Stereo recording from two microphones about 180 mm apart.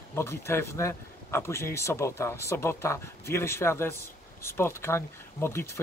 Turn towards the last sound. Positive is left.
turn(degrees=15)  # may be behind; listen again after turning